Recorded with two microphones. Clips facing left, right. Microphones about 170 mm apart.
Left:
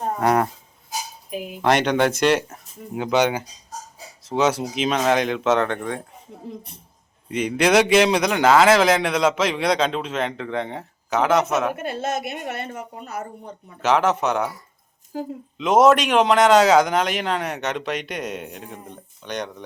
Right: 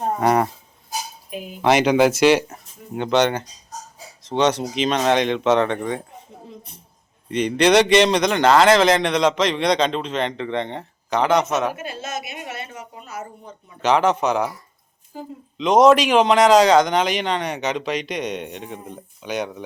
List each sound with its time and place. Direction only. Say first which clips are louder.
0.2 s speech: even; centre (ahead or behind)
7.3 s speech: right 2 dB; 5° left (ahead or behind)
11.8 s a woman's voice: left 4 dB; 55° left (ahead or behind)
13.8 s speech: right 1 dB; centre (ahead or behind)
15.5 s speech: right 2 dB; 5° left (ahead or behind)